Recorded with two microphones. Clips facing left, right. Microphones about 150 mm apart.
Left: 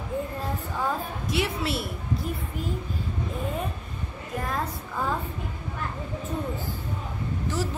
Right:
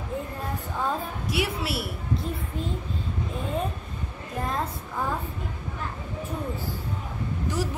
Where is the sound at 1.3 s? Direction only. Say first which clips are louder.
Left 1 dB; 5° right (ahead or behind).